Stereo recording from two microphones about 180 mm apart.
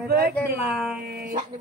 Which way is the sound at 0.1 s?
60° right (ahead or behind).